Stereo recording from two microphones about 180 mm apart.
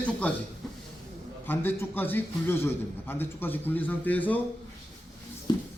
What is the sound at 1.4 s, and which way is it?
A man's voice, 10° left (ahead or behind).